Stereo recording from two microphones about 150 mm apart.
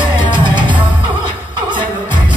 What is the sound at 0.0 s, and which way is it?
Music, 30° right (ahead or behind).